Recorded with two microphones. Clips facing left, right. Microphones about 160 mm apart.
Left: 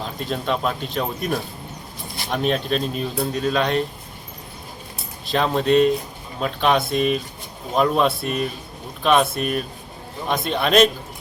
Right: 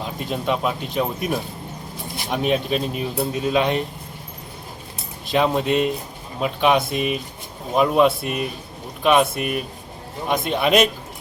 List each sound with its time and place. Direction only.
0.0 s speech: 10° right (ahead or behind)
5.3 s speech: 15° right (ahead or behind)